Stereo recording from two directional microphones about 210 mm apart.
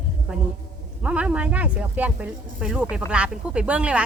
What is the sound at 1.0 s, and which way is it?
Speech, 5° right (ahead or behind).